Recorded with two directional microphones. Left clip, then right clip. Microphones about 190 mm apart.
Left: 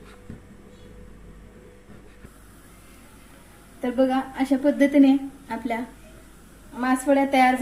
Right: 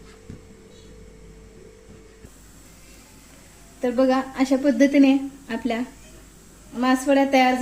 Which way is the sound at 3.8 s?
35° right (ahead or behind).